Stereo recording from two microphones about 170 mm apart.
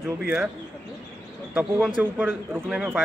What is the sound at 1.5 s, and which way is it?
Speech, 10° right (ahead or behind).